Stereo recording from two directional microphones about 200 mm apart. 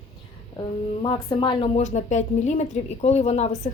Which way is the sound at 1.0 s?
20° left (ahead or behind).